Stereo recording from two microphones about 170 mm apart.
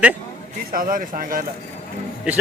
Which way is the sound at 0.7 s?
55° right (ahead or behind).